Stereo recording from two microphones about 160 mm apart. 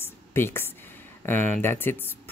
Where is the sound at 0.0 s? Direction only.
15° left (ahead or behind).